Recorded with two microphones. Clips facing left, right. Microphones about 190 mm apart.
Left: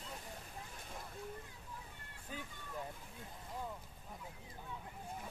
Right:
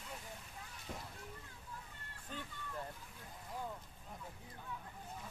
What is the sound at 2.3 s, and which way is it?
Vehicle, 10° left (ahead or behind).